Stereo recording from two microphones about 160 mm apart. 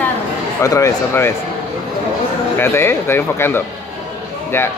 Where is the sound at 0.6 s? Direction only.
20° left (ahead or behind).